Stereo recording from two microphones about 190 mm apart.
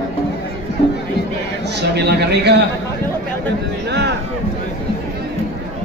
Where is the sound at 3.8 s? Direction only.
60° right (ahead or behind).